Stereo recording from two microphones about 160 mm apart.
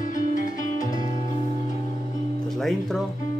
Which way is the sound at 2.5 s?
Centre (ahead or behind).